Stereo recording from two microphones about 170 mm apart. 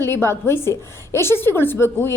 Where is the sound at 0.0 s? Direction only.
15° left (ahead or behind).